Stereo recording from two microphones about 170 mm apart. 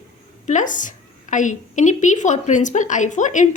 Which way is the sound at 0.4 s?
50° left (ahead or behind).